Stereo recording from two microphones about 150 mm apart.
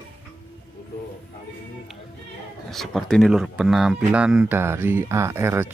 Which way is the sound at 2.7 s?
Centre (ahead or behind).